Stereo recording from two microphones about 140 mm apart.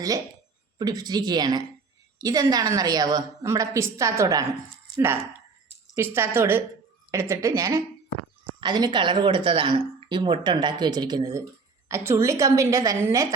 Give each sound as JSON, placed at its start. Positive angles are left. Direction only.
{"t": 0.8, "sound": "a woman's voice", "side_deg": -30}